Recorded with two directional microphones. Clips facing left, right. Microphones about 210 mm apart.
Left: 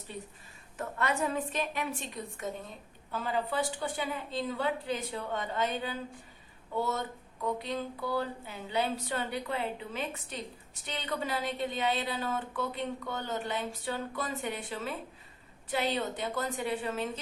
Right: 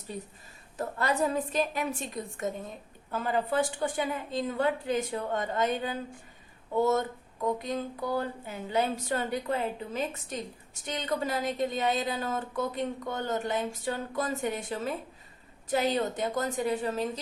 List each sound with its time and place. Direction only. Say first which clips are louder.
0.1 s a woman's voice: right 4 dB; 40° right (ahead or behind)
7.6 s a woman's voice: right 3 dB; 45° right (ahead or behind)